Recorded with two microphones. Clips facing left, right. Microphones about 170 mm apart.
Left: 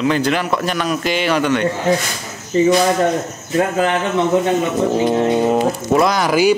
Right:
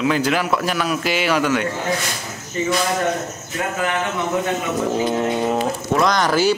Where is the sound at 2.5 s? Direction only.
30° left (ahead or behind).